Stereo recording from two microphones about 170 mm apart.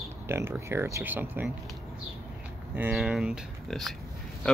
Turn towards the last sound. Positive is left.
turn(degrees=0)  # may be behind; listen again after turning